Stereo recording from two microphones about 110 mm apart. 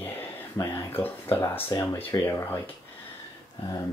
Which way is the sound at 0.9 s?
20° left (ahead or behind).